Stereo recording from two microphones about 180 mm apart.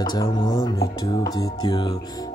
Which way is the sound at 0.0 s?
25° left (ahead or behind).